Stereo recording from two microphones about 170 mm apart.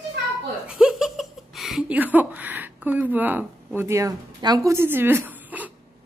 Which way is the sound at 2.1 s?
10° right (ahead or behind).